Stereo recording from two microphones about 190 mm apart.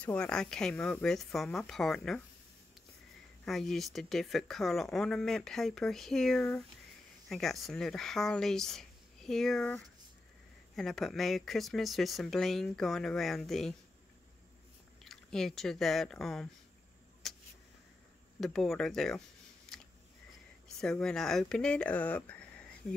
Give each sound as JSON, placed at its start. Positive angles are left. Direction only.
{"t": 0.0, "sound": "speech", "side_deg": 5}
{"t": 3.4, "sound": "speech", "side_deg": 0}
{"t": 15.0, "sound": "speech", "side_deg": 0}
{"t": 17.2, "sound": "a sound", "side_deg": 0}
{"t": 18.4, "sound": "speech", "side_deg": 0}
{"t": 20.8, "sound": "speech", "side_deg": 5}